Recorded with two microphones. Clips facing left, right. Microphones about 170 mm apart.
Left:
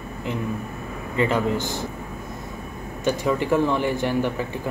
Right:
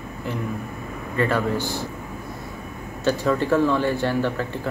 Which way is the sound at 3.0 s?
15° left (ahead or behind).